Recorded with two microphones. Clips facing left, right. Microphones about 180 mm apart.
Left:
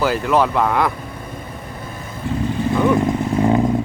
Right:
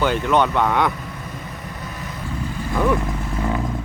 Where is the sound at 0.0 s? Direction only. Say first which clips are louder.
Left 1 dB; centre (ahead or behind).